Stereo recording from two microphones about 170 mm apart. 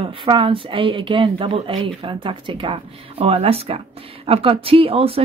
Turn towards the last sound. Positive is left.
turn(degrees=-35)  # may be behind; listen again after turning